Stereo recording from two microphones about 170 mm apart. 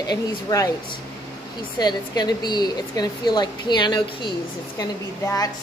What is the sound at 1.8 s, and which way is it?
A woman's voice, 25° left (ahead or behind).